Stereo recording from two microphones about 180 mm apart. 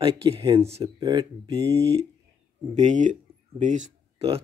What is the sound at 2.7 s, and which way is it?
Speech, 40° right (ahead or behind).